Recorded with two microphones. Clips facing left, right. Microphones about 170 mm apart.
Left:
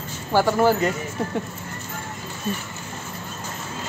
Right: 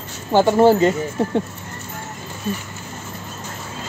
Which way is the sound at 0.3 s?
25° right (ahead or behind).